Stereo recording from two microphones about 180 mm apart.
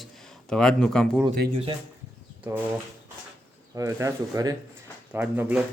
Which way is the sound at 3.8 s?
15° right (ahead or behind).